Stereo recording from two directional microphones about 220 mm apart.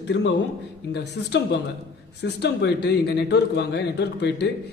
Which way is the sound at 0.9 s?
50° left (ahead or behind).